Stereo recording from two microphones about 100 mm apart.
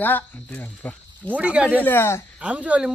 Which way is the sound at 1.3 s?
15° right (ahead or behind).